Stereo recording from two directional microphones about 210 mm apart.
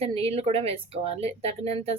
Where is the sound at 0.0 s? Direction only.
30° right (ahead or behind).